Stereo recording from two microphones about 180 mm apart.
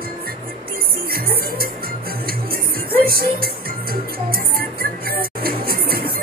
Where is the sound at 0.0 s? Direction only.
55° right (ahead or behind).